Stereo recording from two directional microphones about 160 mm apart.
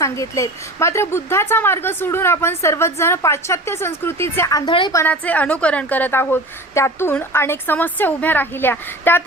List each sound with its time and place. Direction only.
0.0 s speech: 20° left (ahead or behind)
4.9 s speech: 10° left (ahead or behind)